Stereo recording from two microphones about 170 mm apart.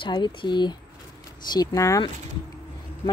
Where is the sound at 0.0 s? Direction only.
30° left (ahead or behind).